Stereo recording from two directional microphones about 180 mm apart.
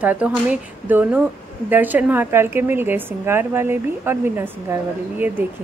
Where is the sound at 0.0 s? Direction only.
10° right (ahead or behind).